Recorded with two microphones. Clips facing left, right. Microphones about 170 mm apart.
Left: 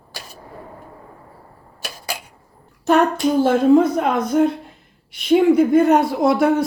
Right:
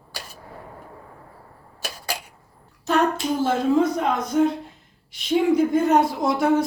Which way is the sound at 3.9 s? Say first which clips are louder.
Left 4 dB; 60° left (ahead or behind).